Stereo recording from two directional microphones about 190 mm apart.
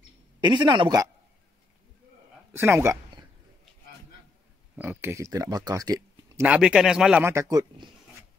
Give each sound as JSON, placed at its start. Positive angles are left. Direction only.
{"t": 0.4, "sound": "speech", "side_deg": -25}
{"t": 2.5, "sound": "a man's voice", "side_deg": -10}
{"t": 4.7, "sound": "speech", "side_deg": -10}
{"t": 6.4, "sound": "a man's voice", "side_deg": -5}